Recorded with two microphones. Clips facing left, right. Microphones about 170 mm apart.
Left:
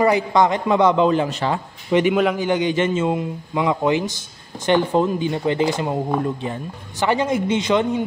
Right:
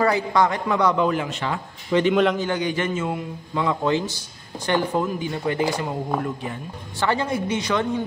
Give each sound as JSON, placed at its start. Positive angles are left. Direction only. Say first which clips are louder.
{"t": 0.0, "sound": "a man's voice", "louder": "left 3 dB", "side_deg": 20}
{"t": 1.9, "sound": "a man's voice", "louder": "left 1 dB", "side_deg": 15}
{"t": 7.0, "sound": "a man's voice", "louder": "left 4 dB", "side_deg": 15}